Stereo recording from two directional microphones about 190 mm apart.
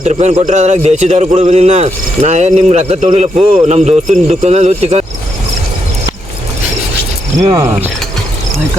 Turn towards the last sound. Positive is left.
turn(degrees=-20)  # may be behind; listen again after turning